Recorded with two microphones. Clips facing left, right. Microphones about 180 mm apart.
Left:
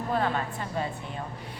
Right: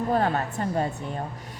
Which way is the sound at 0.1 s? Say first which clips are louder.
Right 2 dB; 45° right (ahead or behind).